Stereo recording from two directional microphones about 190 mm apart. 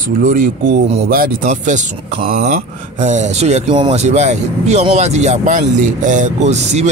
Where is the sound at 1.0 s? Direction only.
50° right (ahead or behind).